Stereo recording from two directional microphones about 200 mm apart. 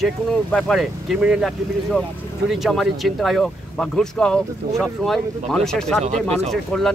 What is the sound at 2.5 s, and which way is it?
Speech, centre (ahead or behind).